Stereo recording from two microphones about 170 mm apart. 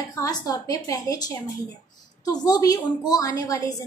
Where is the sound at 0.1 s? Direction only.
20° left (ahead or behind).